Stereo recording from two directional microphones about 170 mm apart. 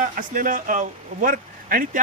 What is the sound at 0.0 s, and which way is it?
Speech, 50° right (ahead or behind).